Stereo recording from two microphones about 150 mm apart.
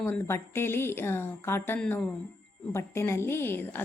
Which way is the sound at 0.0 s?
15° left (ahead or behind).